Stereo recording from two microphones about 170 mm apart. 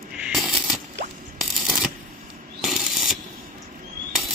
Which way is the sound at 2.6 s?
Centre (ahead or behind).